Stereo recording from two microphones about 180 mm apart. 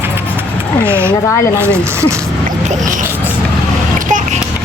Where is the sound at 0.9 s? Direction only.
15° right (ahead or behind).